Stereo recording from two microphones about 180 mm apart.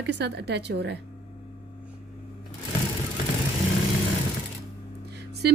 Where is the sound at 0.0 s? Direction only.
70° right (ahead or behind).